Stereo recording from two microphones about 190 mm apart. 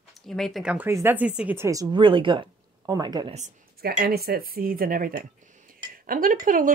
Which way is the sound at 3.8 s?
55° right (ahead or behind).